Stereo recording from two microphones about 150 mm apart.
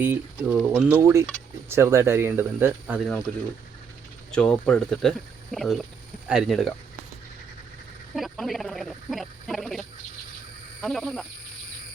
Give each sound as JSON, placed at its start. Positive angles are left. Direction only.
{"t": 0.0, "sound": "speech", "side_deg": -10}
{"t": 0.9, "sound": "speech", "side_deg": -15}
{"t": 4.3, "sound": "speech", "side_deg": 5}
{"t": 8.1, "sound": "speech", "side_deg": 0}